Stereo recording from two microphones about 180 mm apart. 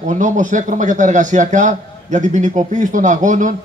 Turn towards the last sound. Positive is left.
turn(degrees=-45)  # may be behind; listen again after turning